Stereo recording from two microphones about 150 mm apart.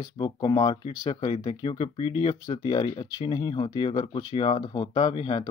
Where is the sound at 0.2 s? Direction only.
30° left (ahead or behind).